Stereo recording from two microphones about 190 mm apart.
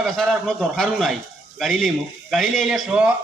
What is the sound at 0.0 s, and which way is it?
A man's voice, 5° left (ahead or behind).